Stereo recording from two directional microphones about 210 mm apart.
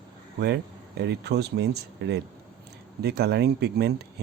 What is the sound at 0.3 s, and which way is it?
Speech, 50° right (ahead or behind).